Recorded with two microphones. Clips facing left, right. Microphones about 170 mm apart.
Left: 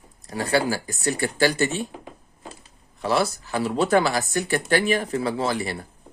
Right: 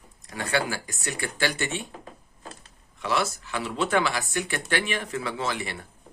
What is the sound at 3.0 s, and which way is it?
Speech, 35° left (ahead or behind).